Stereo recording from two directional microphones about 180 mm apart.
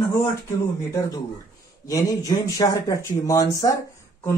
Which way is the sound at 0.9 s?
20° left (ahead or behind).